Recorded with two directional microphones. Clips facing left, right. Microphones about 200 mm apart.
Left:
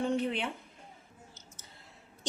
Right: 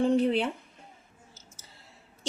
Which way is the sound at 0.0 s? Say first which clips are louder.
Right 7 dB; 35° right (ahead or behind).